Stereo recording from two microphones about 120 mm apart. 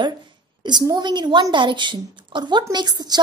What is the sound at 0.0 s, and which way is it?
A woman's voice, 40° right (ahead or behind).